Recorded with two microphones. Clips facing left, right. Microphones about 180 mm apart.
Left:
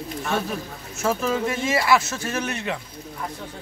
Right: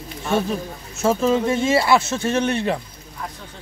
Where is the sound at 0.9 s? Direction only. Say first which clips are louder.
Right 5 dB; 25° right (ahead or behind).